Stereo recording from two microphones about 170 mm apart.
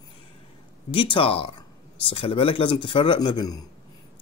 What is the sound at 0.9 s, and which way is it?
Speech, 30° left (ahead or behind).